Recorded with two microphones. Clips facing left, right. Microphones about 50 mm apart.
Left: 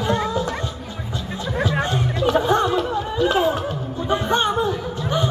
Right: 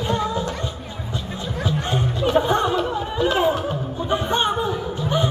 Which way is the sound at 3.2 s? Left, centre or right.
Centre.